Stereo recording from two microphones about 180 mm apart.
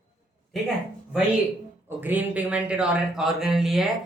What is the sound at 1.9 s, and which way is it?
Speech, 10° right (ahead or behind).